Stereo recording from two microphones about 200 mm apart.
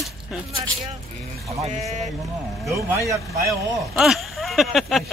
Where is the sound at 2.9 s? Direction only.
15° right (ahead or behind).